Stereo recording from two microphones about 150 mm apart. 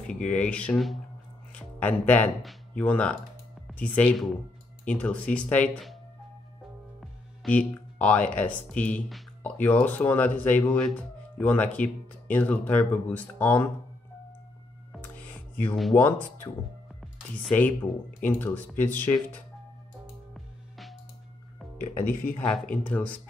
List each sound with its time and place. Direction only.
0.0 s speech: 5° left (ahead or behind)
7.4 s speech: 10° left (ahead or behind)
15.9 s speech: 15° left (ahead or behind)
17.5 s speech: 10° left (ahead or behind)
20.3 s music: centre (ahead or behind)
21.9 s speech: 15° left (ahead or behind)